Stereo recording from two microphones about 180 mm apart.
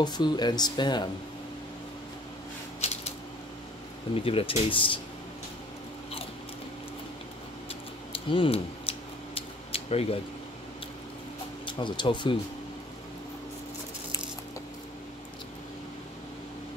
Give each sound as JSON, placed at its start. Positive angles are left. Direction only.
{"t": 0.0, "sound": "speech", "side_deg": 25}
{"t": 4.1, "sound": "speech", "side_deg": 30}
{"t": 8.1, "sound": "scissors", "side_deg": 30}
{"t": 11.6, "sound": "speech", "side_deg": 25}